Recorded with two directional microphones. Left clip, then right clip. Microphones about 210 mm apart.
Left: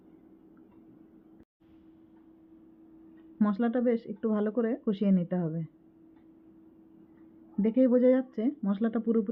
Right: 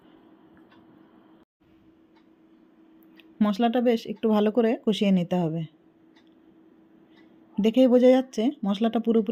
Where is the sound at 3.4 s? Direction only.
15° right (ahead or behind).